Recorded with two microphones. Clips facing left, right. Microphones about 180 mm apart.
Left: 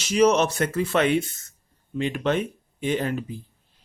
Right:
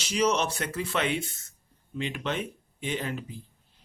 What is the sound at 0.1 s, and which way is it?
Speech, 45° left (ahead or behind).